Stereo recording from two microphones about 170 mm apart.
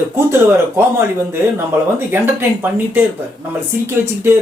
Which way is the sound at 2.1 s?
15° right (ahead or behind).